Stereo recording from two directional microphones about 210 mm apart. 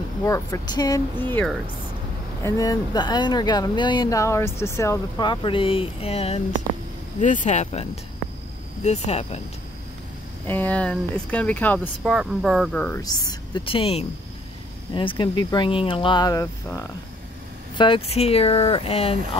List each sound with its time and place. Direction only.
0.2 s speech: 15° left (ahead or behind); by 9.4 s 30° left (ahead or behind)
10.4 s speech: 10° left (ahead or behind)
13.0 s speech: 20° left (ahead or behind)